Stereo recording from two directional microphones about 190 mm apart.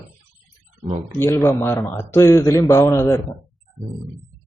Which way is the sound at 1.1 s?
15° left (ahead or behind).